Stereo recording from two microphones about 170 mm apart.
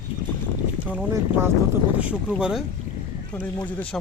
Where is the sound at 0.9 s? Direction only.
10° right (ahead or behind).